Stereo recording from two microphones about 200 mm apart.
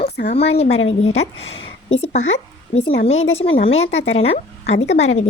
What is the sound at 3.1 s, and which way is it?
Speech, 30° left (ahead or behind).